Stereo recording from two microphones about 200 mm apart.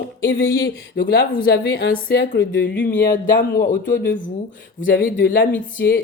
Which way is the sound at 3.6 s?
40° left (ahead or behind).